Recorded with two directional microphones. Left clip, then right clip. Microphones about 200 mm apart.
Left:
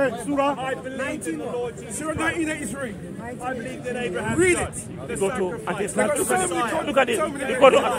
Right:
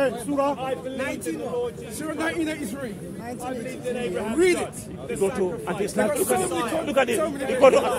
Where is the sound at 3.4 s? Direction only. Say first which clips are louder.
Left 2 dB; 30° right (ahead or behind).